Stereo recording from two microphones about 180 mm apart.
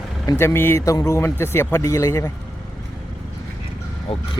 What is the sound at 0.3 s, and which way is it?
Speech, 15° left (ahead or behind).